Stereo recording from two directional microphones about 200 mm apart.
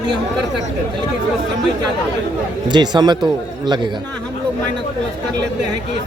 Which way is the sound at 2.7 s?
20° right (ahead or behind).